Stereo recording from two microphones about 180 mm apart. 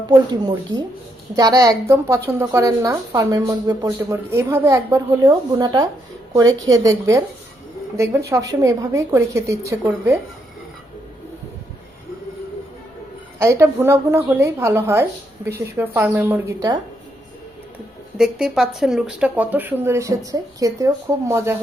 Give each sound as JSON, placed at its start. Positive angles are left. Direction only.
{"t": 0.1, "sound": "a woman's voice", "side_deg": -25}
{"t": 13.4, "sound": "speech", "side_deg": -15}
{"t": 18.2, "sound": "speech", "side_deg": -5}